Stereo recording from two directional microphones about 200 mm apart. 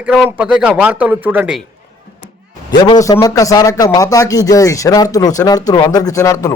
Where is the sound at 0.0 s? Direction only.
5° right (ahead or behind).